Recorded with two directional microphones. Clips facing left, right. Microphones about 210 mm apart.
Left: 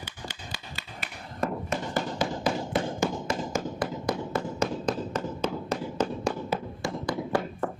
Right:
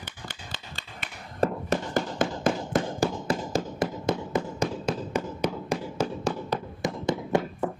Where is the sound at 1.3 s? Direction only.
40° right (ahead or behind).